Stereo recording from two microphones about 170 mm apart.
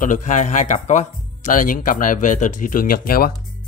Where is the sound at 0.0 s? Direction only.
50° left (ahead or behind).